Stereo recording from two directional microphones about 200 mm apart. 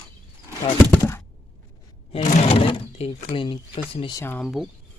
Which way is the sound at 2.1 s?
35° left (ahead or behind).